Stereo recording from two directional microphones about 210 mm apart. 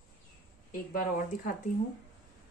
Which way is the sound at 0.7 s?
40° left (ahead or behind).